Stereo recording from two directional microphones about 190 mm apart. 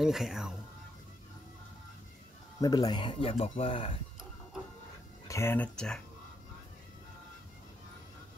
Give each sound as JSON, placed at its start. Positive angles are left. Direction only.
{"t": 0.0, "sound": "speech", "side_deg": 0}
{"t": 2.6, "sound": "speech", "side_deg": 20}
{"t": 5.3, "sound": "speech", "side_deg": 10}